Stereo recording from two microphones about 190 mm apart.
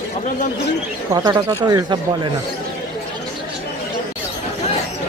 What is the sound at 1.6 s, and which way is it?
Speech, 25° right (ahead or behind).